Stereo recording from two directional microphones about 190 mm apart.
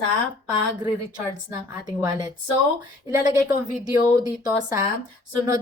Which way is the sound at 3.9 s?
15° right (ahead or behind).